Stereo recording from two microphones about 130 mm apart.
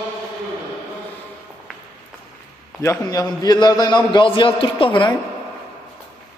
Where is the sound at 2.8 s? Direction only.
25° left (ahead or behind); by 5.1 s 40° left (ahead or behind).